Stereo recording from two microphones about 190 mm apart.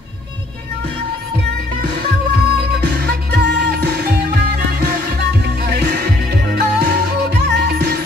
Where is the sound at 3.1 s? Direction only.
60° right (ahead or behind).